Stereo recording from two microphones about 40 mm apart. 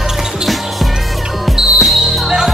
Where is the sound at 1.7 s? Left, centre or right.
Centre.